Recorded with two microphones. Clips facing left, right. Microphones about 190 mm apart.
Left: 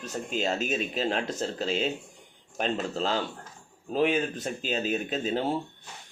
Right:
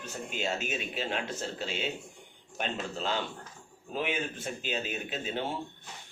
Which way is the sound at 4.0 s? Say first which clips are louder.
Left 8 dB; 40° left (ahead or behind).